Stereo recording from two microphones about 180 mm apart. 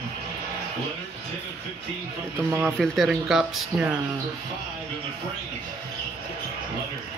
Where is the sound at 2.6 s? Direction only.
5° right (ahead or behind).